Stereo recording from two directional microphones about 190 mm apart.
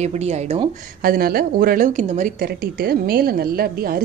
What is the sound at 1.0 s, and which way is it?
A woman's voice, 50° right (ahead or behind).